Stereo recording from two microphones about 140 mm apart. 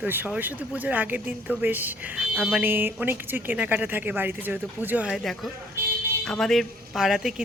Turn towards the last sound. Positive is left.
turn(degrees=0)  # may be behind; listen again after turning